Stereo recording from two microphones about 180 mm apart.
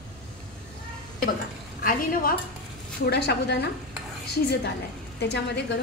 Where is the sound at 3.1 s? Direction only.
65° left (ahead or behind).